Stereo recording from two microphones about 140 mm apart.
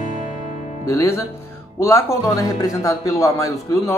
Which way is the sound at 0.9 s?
20° left (ahead or behind).